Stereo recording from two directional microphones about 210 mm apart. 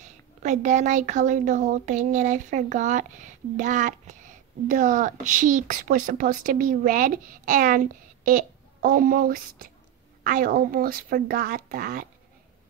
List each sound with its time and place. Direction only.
0.0 s speech: 35° right (ahead or behind)